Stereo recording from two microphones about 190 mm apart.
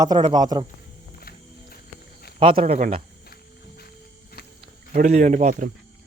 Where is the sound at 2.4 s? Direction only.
30° right (ahead or behind).